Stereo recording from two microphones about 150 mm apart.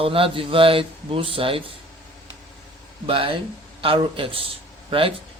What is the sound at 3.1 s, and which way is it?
A man's voice, 35° right (ahead or behind).